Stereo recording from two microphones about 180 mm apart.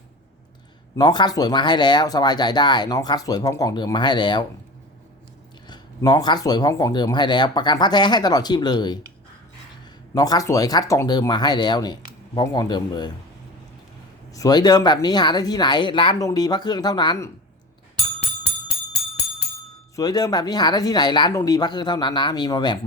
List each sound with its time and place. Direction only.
0.9 s speech: 25° left (ahead or behind)
5.6 s speech: 25° left (ahead or behind)
10.2 s speech: 20° left (ahead or behind)
14.3 s speech: 20° left (ahead or behind)
20.0 s speech: 20° left (ahead or behind)